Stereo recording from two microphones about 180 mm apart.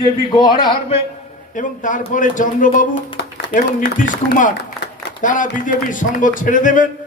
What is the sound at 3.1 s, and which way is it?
A man's voice, 60° left (ahead or behind).